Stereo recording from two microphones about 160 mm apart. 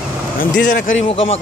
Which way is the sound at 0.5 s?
55° left (ahead or behind).